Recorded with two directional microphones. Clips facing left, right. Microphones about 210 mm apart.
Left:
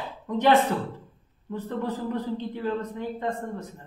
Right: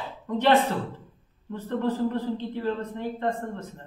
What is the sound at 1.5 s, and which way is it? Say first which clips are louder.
A man's voice: right 3 dB; 15° left (ahead or behind).